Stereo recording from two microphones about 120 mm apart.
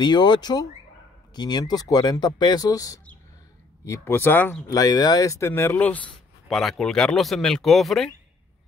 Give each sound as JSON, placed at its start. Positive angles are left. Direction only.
{"t": 0.0, "sound": "speech", "side_deg": 35}
{"t": 4.6, "sound": "speech", "side_deg": 35}
{"t": 6.5, "sound": "speech", "side_deg": 5}